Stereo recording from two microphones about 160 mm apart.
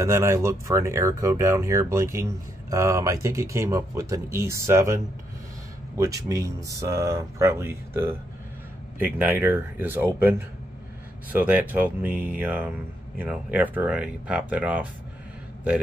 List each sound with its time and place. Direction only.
0.0 s speech: 15° right (ahead or behind)
11.3 s speech: 10° right (ahead or behind)